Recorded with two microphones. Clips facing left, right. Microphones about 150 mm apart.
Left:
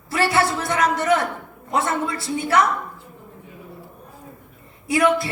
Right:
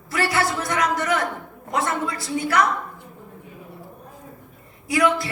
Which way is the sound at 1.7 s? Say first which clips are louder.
Left 2 dB; 25° left (ahead or behind).